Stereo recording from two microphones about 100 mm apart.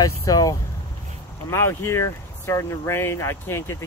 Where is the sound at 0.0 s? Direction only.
35° left (ahead or behind).